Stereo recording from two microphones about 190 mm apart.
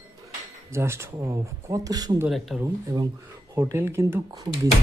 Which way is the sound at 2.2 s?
Centre (ahead or behind).